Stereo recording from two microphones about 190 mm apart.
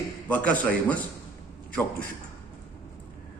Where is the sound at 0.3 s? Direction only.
10° left (ahead or behind).